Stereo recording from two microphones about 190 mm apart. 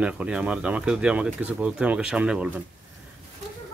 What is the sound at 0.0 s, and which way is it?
Speech, 5° right (ahead or behind).